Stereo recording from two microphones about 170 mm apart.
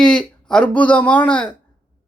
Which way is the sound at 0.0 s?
5° left (ahead or behind).